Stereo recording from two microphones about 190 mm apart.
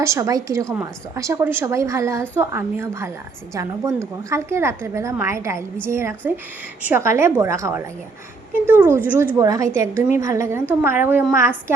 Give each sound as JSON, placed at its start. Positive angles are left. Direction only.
{"t": 0.0, "sound": "a woman's voice", "side_deg": -15}